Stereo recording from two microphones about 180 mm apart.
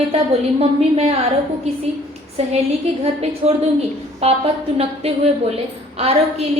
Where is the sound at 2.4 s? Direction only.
35° right (ahead or behind).